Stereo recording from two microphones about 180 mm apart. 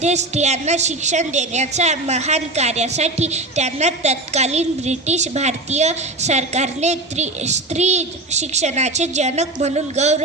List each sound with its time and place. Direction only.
0.0 s a woman's voice: 40° right (ahead or behind)